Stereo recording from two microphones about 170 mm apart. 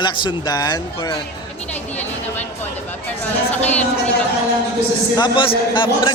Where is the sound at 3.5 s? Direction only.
10° left (ahead or behind).